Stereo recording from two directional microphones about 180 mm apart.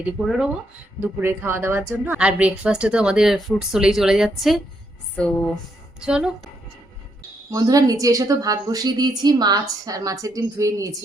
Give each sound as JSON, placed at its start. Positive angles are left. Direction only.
{"t": 0.0, "sound": "speech", "side_deg": -5}
{"t": 6.0, "sound": "speech", "side_deg": -5}
{"t": 7.5, "sound": "a woman's voice", "side_deg": -20}